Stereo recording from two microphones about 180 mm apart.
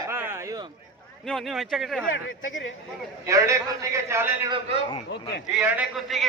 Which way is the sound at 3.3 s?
15° right (ahead or behind).